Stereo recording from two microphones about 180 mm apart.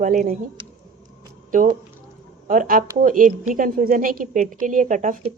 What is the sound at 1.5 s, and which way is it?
A woman's voice, 45° right (ahead or behind).